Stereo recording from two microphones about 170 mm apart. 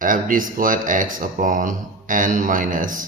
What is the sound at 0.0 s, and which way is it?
A man's voice, 55° right (ahead or behind).